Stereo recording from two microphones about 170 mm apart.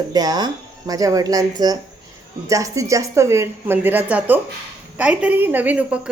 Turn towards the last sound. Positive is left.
turn(degrees=-10)  # may be behind; listen again after turning